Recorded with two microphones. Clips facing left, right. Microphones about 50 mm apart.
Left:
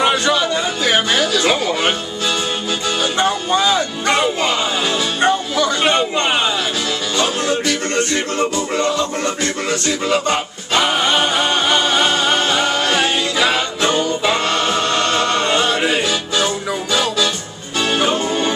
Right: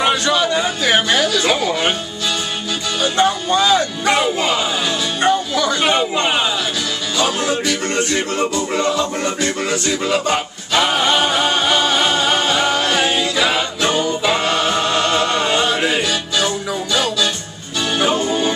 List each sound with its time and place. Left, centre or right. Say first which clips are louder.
0.0 s a sound: left 1 dB; centre
3.0 s music: right 3 dB; centre
16.0 s music: left 1 dB; left